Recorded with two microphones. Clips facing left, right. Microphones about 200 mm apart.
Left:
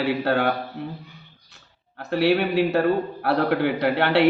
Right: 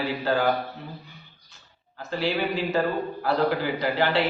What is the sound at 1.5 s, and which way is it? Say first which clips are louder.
A man's voice: left 2 dB; 65° left (ahead or behind).